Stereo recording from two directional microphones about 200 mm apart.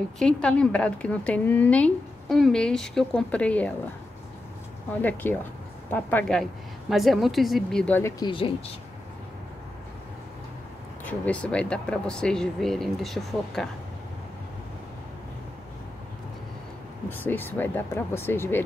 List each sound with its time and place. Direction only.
0.2 s a woman's voice: 5° left (ahead or behind)
5.0 s a woman's voice: 10° left (ahead or behind)
8.2 s speech: 25° left (ahead or behind)
11.1 s a woman's voice: 5° left (ahead or behind)
17.1 s speech: 10° left (ahead or behind)